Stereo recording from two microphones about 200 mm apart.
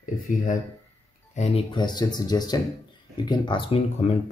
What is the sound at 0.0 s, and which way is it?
Speech, 40° left (ahead or behind).